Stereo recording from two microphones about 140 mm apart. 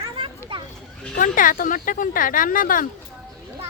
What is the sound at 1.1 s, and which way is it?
Speech, 70° left (ahead or behind).